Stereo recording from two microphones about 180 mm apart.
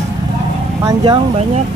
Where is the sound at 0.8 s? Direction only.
25° right (ahead or behind).